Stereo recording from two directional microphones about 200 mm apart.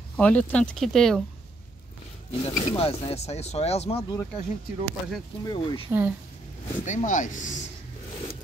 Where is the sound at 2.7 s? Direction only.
25° left (ahead or behind).